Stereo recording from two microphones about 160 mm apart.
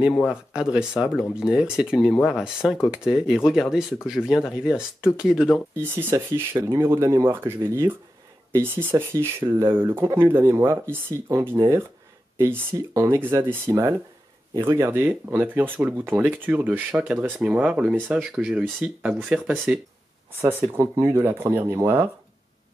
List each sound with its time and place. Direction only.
0.1 s speech: 5° right (ahead or behind)